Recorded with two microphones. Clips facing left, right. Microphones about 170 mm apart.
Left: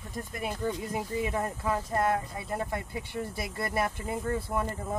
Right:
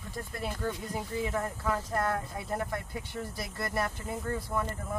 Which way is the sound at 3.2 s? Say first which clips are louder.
Left 3 dB; 25° left (ahead or behind).